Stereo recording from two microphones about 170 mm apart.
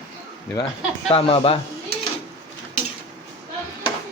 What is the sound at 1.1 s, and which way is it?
Speech, 35° left (ahead or behind).